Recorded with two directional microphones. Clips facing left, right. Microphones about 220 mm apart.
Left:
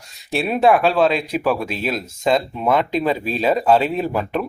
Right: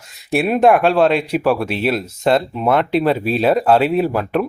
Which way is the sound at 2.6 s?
10° left (ahead or behind).